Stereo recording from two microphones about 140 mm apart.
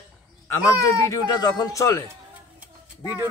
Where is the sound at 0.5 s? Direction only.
20° left (ahead or behind).